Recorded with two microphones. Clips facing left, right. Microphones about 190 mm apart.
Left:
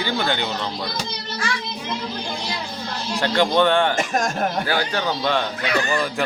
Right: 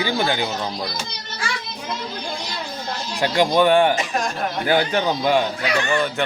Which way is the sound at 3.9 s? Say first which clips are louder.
Left 1 dB; 45° left (ahead or behind).